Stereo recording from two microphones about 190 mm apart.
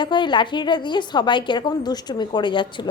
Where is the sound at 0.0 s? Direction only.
25° left (ahead or behind).